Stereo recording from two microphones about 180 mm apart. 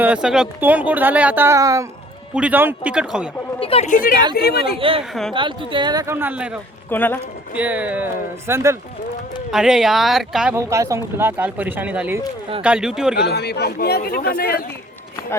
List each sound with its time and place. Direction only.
0.0 s speech: 5° right (ahead or behind)
2.3 s speech: 10° right (ahead or behind)
3.6 s speech: 35° left (ahead or behind)
4.4 s speech: 60° left (ahead or behind)
4.8 s speech: 30° right (ahead or behind); by 6.6 s 5° right (ahead or behind)
6.9 s speech: 10° left (ahead or behind)
7.5 s speech: 10° right (ahead or behind)
9.5 s speech: 5° right (ahead or behind)
10.5 s speech: 15° right (ahead or behind)
13.1 s speech: 65° left (ahead or behind)